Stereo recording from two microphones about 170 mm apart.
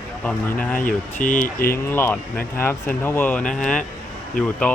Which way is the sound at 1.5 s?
60° left (ahead or behind).